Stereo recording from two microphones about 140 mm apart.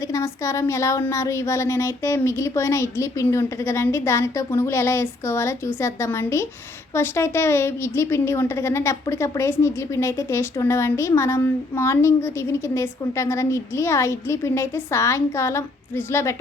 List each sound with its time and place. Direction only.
0.1 s a woman's voice: 20° left (ahead or behind)